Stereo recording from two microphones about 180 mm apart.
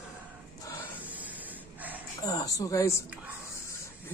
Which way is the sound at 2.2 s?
20° left (ahead or behind).